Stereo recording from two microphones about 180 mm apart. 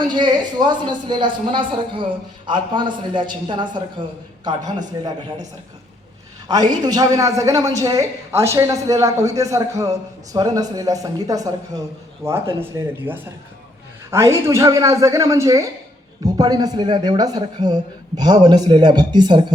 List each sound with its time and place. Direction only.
0.1 s speech: 25° right (ahead or behind)
6.5 s a woman's voice: 20° right (ahead or behind)